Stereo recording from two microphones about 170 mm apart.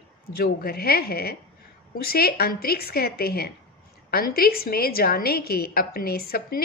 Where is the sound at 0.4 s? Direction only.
60° left (ahead or behind).